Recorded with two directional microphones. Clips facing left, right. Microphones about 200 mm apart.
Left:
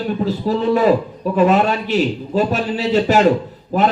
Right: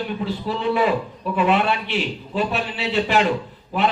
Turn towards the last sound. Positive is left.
turn(degrees=40)  # may be behind; listen again after turning